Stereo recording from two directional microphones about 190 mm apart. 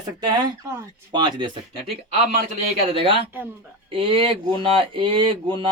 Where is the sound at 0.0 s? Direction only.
20° right (ahead or behind).